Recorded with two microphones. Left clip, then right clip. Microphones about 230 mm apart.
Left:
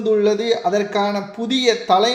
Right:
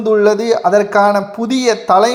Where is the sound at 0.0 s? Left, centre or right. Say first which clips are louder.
Right 5 dB; centre.